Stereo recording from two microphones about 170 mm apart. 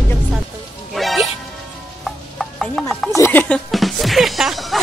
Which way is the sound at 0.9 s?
Centre (ahead or behind).